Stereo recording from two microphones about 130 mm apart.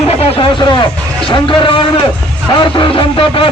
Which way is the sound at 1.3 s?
40° left (ahead or behind).